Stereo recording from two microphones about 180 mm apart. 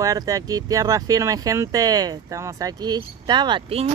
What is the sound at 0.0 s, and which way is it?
Speech, 20° right (ahead or behind).